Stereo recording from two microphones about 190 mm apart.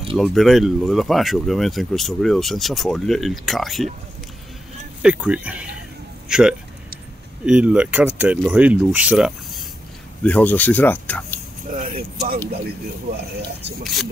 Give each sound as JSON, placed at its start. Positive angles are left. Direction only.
{"t": 0.2, "sound": "speech", "side_deg": 0}
{"t": 5.0, "sound": "speech", "side_deg": -5}
{"t": 11.7, "sound": "speech", "side_deg": -50}